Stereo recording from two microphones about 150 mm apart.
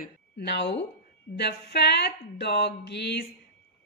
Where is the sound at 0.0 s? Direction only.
90° left.